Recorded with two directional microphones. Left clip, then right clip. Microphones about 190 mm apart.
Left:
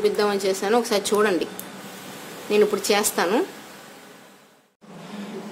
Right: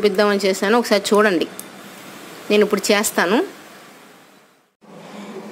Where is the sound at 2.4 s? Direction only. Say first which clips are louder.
Right 4 dB; 35° right (ahead or behind).